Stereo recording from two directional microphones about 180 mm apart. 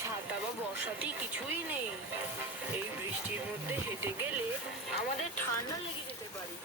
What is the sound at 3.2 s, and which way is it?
Speech, 10° right (ahead or behind).